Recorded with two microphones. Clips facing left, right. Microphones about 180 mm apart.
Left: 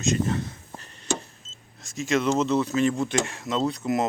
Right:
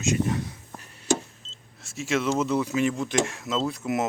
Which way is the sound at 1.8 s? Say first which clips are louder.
Left 2 dB; 5° right (ahead or behind).